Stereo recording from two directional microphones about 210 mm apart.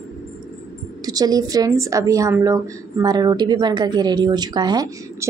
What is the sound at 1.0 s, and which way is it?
A woman's voice, 20° right (ahead or behind).